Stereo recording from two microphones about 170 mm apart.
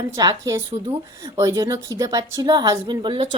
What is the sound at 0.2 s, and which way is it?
A woman's voice, 20° right (ahead or behind).